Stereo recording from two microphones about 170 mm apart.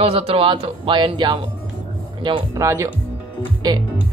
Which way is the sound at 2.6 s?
15° right (ahead or behind).